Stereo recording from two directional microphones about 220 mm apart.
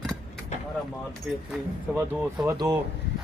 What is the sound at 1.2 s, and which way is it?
Speech, centre (ahead or behind).